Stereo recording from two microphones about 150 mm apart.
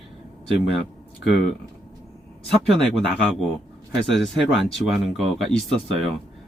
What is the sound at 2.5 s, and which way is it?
Speech, 5° left (ahead or behind).